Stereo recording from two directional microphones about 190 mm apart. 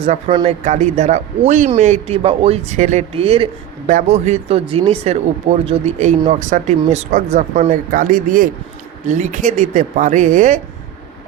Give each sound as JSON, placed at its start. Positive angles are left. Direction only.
{"t": 0.0, "sound": "speech", "side_deg": -30}